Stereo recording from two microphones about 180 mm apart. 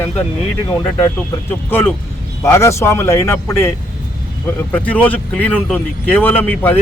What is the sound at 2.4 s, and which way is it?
Speech, 15° left (ahead or behind).